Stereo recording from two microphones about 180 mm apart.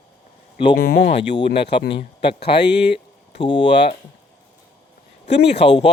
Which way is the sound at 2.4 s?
70° left (ahead or behind).